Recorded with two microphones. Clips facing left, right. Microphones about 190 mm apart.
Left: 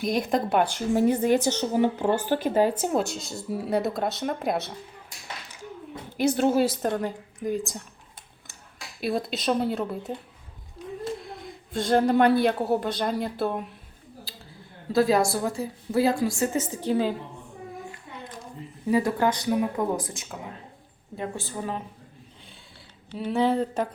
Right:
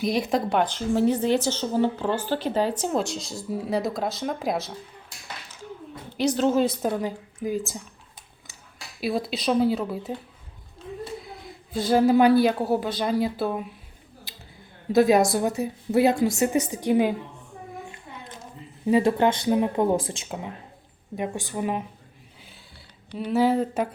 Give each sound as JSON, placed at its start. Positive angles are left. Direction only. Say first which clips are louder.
{"t": 0.0, "sound": "speech", "louder": "right 1 dB", "side_deg": 0}
{"t": 1.1, "sound": "a woman's voice", "louder": "left 1 dB", "side_deg": 50}
{"t": 1.4, "sound": "speech", "louder": "even", "side_deg": 15}
{"t": 6.3, "sound": "a woman's voice", "louder": "right 1 dB", "side_deg": 10}
{"t": 6.8, "sound": "speech", "louder": "right 1 dB", "side_deg": -5}
{"t": 9.0, "sound": "speech", "louder": "right 1 dB", "side_deg": 0}
{"t": 11.2, "sound": "a woman's voice", "louder": "left 1 dB", "side_deg": 0}
{"t": 14.9, "sound": "a woman's voice", "louder": "right 3 dB", "side_deg": -20}
{"t": 18.9, "sound": "a woman's voice", "louder": "right 3 dB", "side_deg": -25}
{"t": 21.2, "sound": "a woman's voice", "louder": "right 4 dB", "side_deg": -15}
{"t": 23.1, "sound": "speech", "louder": "right 2 dB", "side_deg": 0}